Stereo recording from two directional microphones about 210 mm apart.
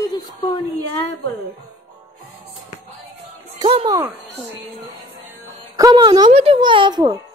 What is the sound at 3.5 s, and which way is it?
Speech, 20° right (ahead or behind).